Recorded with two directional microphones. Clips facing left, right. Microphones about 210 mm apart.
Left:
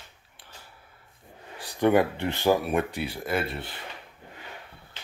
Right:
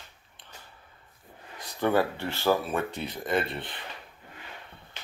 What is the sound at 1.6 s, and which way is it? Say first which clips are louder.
Speech: left 4 dB; 15° left (ahead or behind).